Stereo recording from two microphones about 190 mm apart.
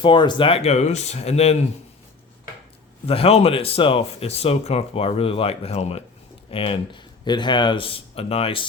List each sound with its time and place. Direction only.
0.0 s speech: 25° left (ahead or behind)
3.1 s speech: 30° left (ahead or behind)